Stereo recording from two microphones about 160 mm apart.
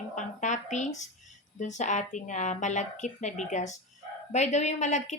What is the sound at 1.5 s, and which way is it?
A woman's voice, 50° left (ahead or behind).